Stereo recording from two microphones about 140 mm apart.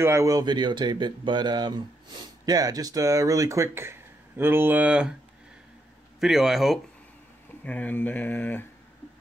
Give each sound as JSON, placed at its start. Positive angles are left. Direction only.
{"t": 0.0, "sound": "speech", "side_deg": -20}
{"t": 6.1, "sound": "speech", "side_deg": 0}
{"t": 7.6, "sound": "speech", "side_deg": 10}